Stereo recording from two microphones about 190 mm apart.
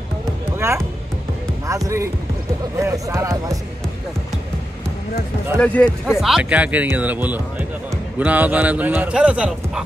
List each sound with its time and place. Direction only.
0.6 s speech: 15° right (ahead or behind)
5.6 s speech: 5° left (ahead or behind)